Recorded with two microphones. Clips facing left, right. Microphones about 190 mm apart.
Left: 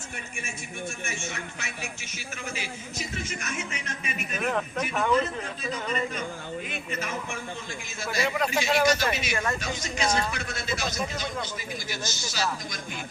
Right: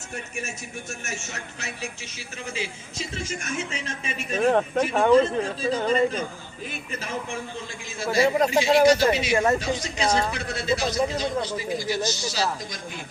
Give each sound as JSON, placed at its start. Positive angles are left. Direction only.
{"t": 1.0, "sound": "a man's voice", "side_deg": -40}